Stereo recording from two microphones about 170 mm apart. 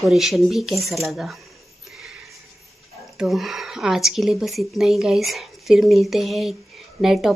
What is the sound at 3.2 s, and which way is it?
Speech, centre (ahead or behind).